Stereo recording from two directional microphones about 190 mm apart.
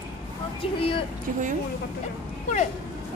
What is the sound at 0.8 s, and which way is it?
Speech, 30° left (ahead or behind).